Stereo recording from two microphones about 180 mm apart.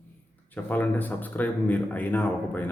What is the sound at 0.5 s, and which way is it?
Speech, 10° left (ahead or behind).